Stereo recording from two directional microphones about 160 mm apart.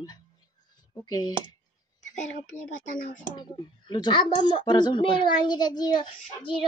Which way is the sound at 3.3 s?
30° left (ahead or behind).